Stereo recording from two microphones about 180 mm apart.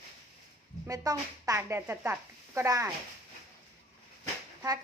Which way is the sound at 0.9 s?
20° right (ahead or behind).